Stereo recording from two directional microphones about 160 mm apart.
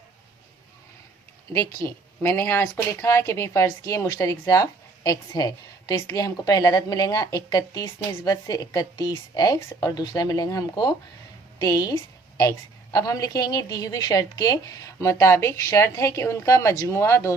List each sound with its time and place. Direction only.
1.5 s speech: 20° left (ahead or behind)